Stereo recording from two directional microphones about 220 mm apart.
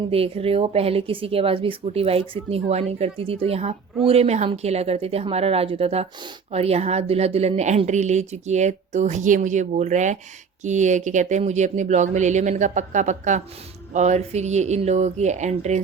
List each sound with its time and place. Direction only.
0.1 s a woman's voice: 25° right (ahead or behind)